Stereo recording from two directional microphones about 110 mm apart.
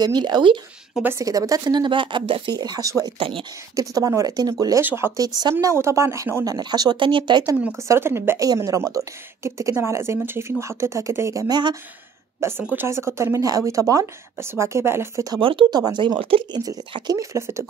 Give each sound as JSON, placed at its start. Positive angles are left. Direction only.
{"t": 0.0, "sound": "speech", "side_deg": -40}
{"t": 1.2, "sound": "speech", "side_deg": -35}
{"t": 3.2, "sound": "speech", "side_deg": -55}
{"t": 3.7, "sound": "speech", "side_deg": -35}
{"t": 4.8, "sound": "a woman's voice", "side_deg": -20}
{"t": 5.1, "sound": "a woman's voice", "side_deg": -35}
{"t": 6.5, "sound": "speech", "side_deg": -40}
{"t": 7.9, "sound": "a woman's voice", "side_deg": -20}
{"t": 12.4, "sound": "a woman's voice", "side_deg": -20}
{"t": 15.4, "sound": "speech", "side_deg": -45}
{"t": 16.5, "sound": "a woman's voice", "side_deg": -40}